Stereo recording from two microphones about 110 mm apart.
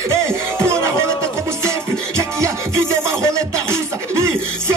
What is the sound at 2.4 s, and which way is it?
Music, 25° right (ahead or behind).